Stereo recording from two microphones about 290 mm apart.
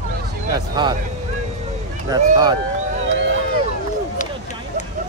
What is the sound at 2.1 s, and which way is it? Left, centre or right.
Speech, centre.